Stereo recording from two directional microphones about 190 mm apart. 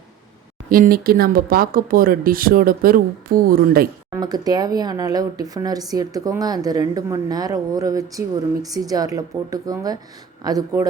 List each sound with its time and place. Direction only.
0.7 s speech: 50° right (ahead or behind)
4.1 s speech: 20° right (ahead or behind)